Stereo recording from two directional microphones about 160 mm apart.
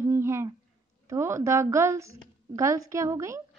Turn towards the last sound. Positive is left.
turn(degrees=-20)  # may be behind; listen again after turning